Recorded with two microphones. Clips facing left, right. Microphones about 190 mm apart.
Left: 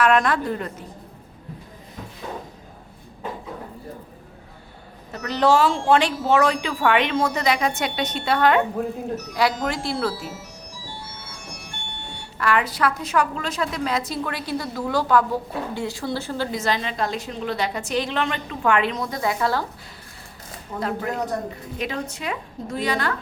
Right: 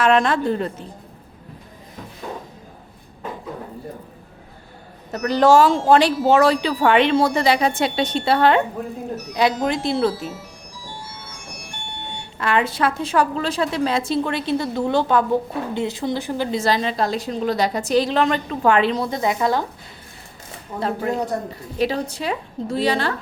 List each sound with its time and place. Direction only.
0.0 s a woman's voice: 25° right (ahead or behind)
5.1 s a woman's voice: 40° right (ahead or behind); by 10.2 s 20° right (ahead or behind)
12.4 s a woman's voice: 25° right (ahead or behind)
16.6 s speech: 35° right (ahead or behind); by 19.6 s 20° right (ahead or behind)
20.7 s speech: 30° right (ahead or behind)